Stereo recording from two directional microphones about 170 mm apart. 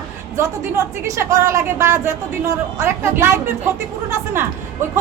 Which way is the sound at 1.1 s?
15° right (ahead or behind).